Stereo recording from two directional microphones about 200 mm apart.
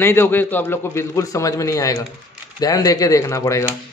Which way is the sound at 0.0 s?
10° left (ahead or behind).